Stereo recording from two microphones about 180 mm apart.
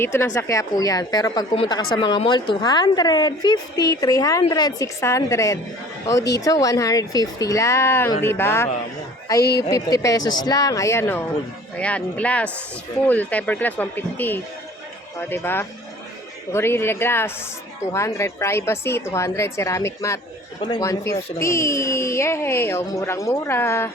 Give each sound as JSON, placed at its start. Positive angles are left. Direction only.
{"t": 0.0, "sound": "a woman's voice", "side_deg": 15}
{"t": 9.7, "sound": "a woman's voice", "side_deg": 20}
{"t": 20.6, "sound": "a woman's voice", "side_deg": 30}
{"t": 20.8, "sound": "speech", "side_deg": 15}